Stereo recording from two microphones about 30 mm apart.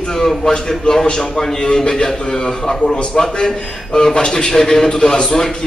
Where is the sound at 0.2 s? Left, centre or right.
Left.